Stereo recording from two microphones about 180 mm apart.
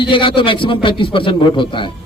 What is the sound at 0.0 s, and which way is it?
A man's voice, 30° left (ahead or behind).